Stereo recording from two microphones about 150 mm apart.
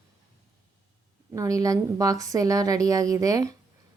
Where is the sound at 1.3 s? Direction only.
20° right (ahead or behind).